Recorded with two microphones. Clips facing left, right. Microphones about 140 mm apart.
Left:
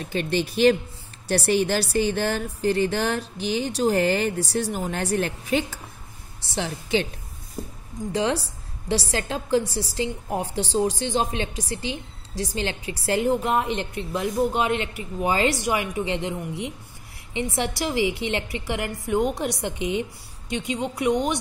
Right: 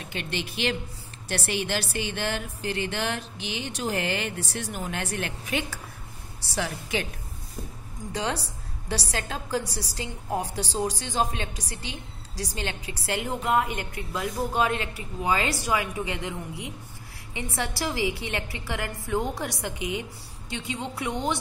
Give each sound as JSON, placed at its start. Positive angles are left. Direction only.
{"t": 0.1, "sound": "a woman's voice", "side_deg": 35}
{"t": 8.1, "sound": "a woman's voice", "side_deg": 30}